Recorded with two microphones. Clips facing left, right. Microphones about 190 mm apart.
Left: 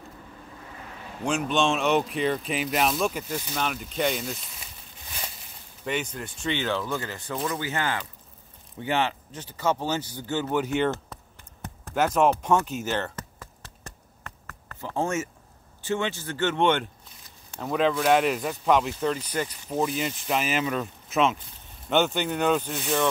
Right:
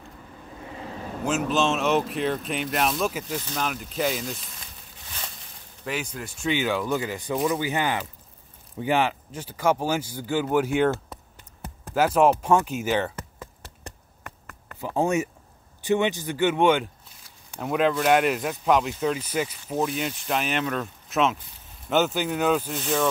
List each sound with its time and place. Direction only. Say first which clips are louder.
1.2 s speech: right 1 dB; 5° right (ahead or behind)
5.9 s speech: left 1 dB; 5° right (ahead or behind)
14.2 s a sound: right 2 dB; 15° right (ahead or behind)
15.8 s speech: right 5 dB; 15° right (ahead or behind); by 23.0 s centre (ahead or behind)